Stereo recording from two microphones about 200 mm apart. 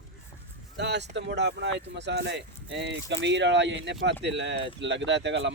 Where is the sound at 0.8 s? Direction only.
60° right (ahead or behind).